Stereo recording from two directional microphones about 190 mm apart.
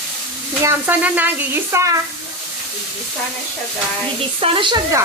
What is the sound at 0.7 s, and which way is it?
Speech, 10° right (ahead or behind).